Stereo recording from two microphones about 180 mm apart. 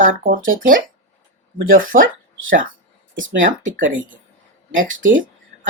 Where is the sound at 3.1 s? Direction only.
45° right (ahead or behind).